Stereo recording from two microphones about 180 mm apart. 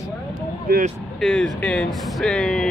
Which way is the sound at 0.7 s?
60° right (ahead or behind).